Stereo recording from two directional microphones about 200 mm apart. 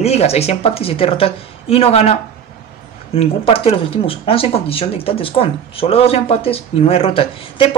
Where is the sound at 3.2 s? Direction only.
30° left (ahead or behind).